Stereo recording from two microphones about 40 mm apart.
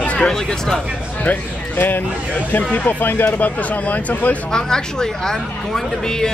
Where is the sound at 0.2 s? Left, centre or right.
Centre.